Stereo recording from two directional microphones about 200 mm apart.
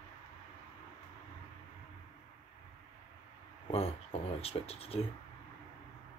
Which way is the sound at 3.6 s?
30° left (ahead or behind).